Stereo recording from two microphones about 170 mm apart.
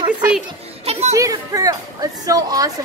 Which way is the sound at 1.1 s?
20° right (ahead or behind).